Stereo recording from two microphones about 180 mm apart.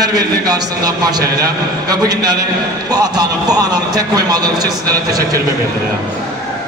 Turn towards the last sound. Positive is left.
turn(degrees=-20)  # may be behind; listen again after turning